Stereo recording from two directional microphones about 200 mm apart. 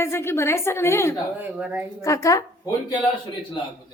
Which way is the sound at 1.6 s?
10° right (ahead or behind).